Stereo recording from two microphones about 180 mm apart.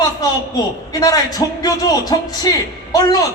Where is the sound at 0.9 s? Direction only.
20° left (ahead or behind).